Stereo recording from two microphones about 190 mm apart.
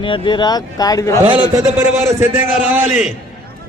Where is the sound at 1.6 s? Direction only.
15° right (ahead or behind).